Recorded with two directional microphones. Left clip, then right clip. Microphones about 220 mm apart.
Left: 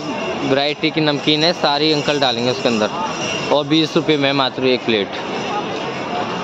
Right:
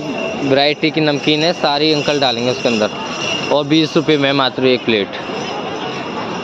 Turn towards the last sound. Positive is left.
turn(degrees=-10)  # may be behind; listen again after turning